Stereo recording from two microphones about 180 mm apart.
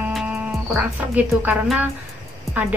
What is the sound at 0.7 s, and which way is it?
Speech, 10° right (ahead or behind).